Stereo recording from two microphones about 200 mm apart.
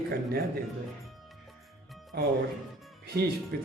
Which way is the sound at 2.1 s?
50° right (ahead or behind).